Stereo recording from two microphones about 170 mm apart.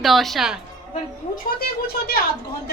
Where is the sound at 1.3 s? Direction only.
65° left (ahead or behind).